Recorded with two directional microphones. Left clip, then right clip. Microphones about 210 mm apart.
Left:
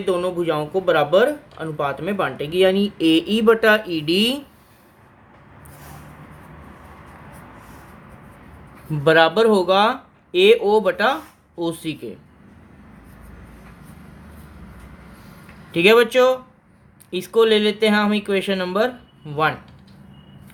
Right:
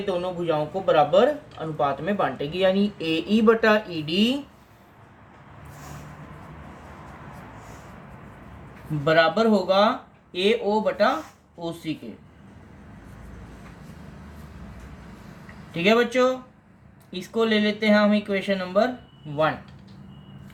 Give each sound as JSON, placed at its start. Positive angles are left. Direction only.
{"t": 0.1, "sound": "speech", "side_deg": 45}
{"t": 9.0, "sound": "speech", "side_deg": 50}
{"t": 15.7, "sound": "speech", "side_deg": 50}